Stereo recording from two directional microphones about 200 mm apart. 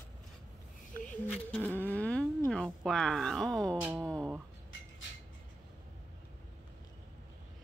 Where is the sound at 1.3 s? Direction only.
5° left (ahead or behind).